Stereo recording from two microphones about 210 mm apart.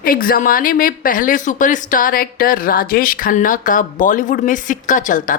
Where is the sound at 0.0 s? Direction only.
45° left (ahead or behind).